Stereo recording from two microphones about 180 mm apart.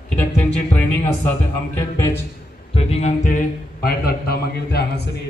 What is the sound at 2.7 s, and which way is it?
Speech, 35° left (ahead or behind).